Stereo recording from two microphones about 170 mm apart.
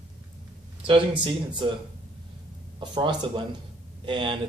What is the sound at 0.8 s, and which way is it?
Speech, 30° right (ahead or behind).